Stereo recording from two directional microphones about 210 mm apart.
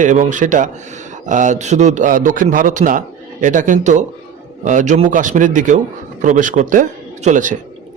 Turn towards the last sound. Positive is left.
turn(degrees=-35)  # may be behind; listen again after turning